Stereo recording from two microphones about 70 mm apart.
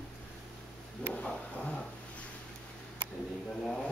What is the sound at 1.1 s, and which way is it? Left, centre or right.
Speech, centre.